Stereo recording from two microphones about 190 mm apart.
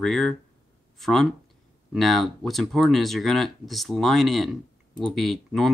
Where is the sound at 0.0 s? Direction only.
5° left (ahead or behind).